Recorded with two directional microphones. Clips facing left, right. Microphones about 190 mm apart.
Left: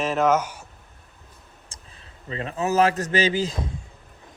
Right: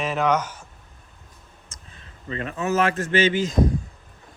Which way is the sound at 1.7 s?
30° left (ahead or behind).